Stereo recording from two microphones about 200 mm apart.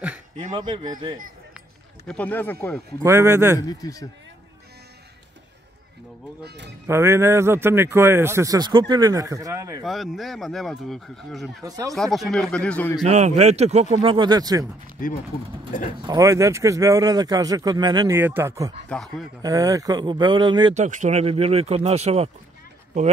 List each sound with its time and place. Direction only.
0.5 s speech: 20° right (ahead or behind)
2.0 s speech: 5° left (ahead or behind)
3.0 s a man's voice: 15° right (ahead or behind)
3.5 s speech: 20° left (ahead or behind)
6.4 s speech: 60° right (ahead or behind)
6.9 s a man's voice: 15° right (ahead or behind)
9.8 s speech: centre (ahead or behind)
11.6 s speech: 20° right (ahead or behind)
11.9 s speech: centre (ahead or behind)
13.0 s speech: 35° right (ahead or behind); by 14.7 s 20° right (ahead or behind)
16.0 s a man's voice: 20° right (ahead or behind)
18.9 s speech: centre (ahead or behind)
19.4 s speech: 15° right (ahead or behind)
20.7 s speech: 35° right (ahead or behind)